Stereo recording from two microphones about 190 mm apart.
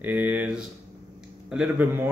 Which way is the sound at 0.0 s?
10° right (ahead or behind).